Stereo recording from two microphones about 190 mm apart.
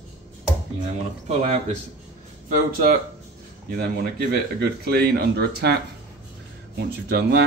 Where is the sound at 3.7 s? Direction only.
55° right (ahead or behind).